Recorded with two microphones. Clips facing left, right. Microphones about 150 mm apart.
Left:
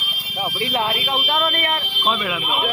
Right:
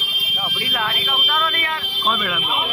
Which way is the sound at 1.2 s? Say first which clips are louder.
Left 1 dB; 30° left (ahead or behind).